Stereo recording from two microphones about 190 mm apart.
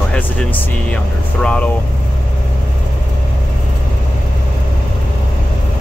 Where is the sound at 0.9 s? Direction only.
5° left (ahead or behind).